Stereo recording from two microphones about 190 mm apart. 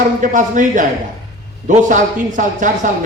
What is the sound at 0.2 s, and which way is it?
A man's voice, 45° right (ahead or behind).